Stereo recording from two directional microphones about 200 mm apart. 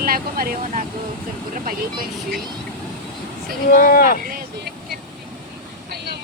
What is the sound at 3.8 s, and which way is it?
Speech, 45° left (ahead or behind).